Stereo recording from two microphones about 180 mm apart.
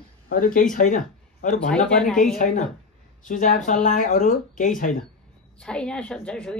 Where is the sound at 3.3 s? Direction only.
45° left (ahead or behind).